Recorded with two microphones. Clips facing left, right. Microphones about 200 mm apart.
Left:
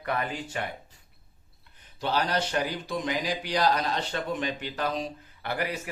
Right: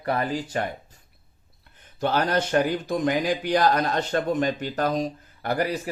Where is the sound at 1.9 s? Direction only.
50° right (ahead or behind).